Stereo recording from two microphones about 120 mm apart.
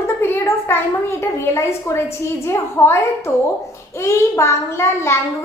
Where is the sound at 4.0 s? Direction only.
25° left (ahead or behind).